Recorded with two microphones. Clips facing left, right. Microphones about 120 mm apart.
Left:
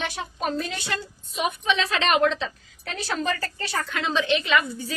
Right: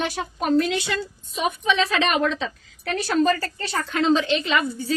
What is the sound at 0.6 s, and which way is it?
Speech, 90° right.